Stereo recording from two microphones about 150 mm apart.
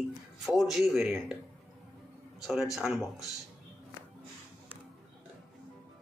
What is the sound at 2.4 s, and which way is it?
Speech, centre (ahead or behind).